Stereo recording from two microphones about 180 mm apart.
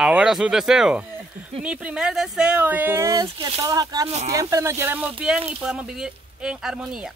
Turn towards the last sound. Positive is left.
turn(degrees=-5)  # may be behind; listen again after turning